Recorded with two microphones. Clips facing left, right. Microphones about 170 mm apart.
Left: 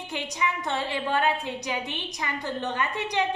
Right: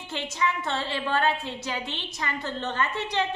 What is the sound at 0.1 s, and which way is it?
A woman's voice, 15° left (ahead or behind).